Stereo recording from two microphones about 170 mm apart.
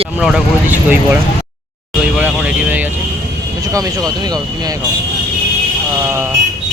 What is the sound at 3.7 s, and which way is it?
Speech, 20° right (ahead or behind).